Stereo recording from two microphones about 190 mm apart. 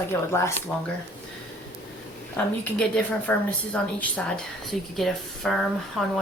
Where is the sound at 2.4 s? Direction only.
10° left (ahead or behind).